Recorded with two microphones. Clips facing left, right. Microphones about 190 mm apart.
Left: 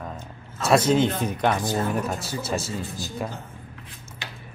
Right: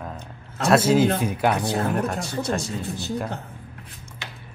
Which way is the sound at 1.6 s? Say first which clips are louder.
Right 1 dB; 65° right (ahead or behind).